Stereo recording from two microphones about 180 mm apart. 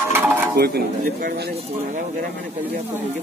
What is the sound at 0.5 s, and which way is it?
Speech, 60° right (ahead or behind).